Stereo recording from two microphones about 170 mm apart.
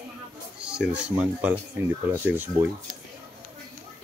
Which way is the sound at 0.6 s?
5° right (ahead or behind).